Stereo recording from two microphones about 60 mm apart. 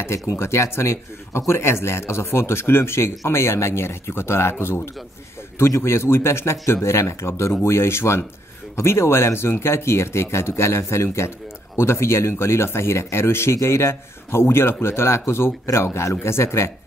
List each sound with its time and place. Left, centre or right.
0.4 s speech: left